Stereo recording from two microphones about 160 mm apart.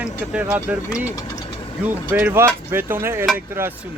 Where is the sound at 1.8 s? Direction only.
10° right (ahead or behind).